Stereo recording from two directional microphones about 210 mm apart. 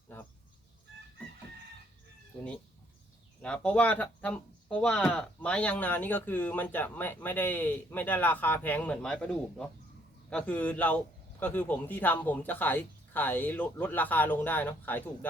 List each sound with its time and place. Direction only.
3.4 s speech: 5° left (ahead or behind)